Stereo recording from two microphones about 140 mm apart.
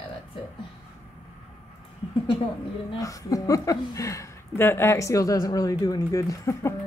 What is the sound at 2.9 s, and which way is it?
A woman's voice, 25° left (ahead or behind).